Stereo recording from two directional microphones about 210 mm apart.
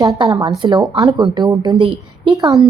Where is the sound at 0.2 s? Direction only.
20° right (ahead or behind).